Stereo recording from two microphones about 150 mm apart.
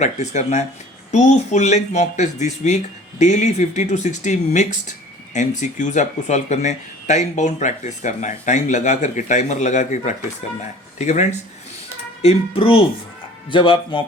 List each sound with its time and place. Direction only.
0.0 s speech: 50° left (ahead or behind)
12.2 s speech: 40° left (ahead or behind)